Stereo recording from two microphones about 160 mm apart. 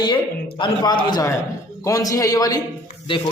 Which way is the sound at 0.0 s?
30° left (ahead or behind).